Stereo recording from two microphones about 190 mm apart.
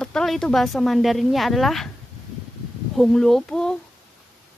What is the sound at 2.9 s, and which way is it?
Speech, centre (ahead or behind).